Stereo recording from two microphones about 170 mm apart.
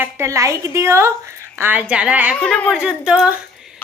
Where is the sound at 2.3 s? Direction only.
5° left (ahead or behind).